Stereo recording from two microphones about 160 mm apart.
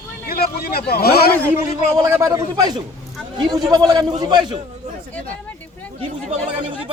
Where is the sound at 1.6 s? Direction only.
45° left (ahead or behind).